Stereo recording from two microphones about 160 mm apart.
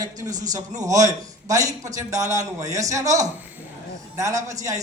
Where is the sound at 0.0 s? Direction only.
25° right (ahead or behind).